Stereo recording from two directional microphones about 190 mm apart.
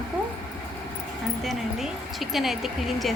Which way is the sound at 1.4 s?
Centre (ahead or behind).